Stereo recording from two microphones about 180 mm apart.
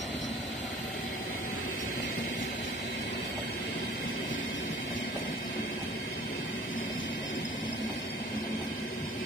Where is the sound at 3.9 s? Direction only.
45° left (ahead or behind).